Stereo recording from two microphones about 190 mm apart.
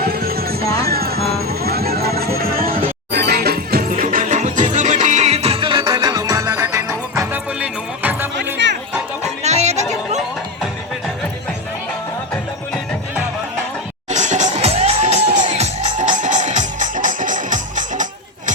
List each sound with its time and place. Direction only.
0.0 s music: 55° right (ahead or behind); by 8.3 s 10° right (ahead or behind)
8.5 s music: 65° right (ahead or behind)
9.4 s music: 35° right (ahead or behind)
14.1 s music: 40° right (ahead or behind)